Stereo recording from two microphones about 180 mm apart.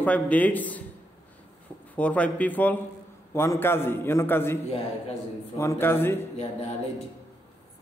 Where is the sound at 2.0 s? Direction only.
10° left (ahead or behind).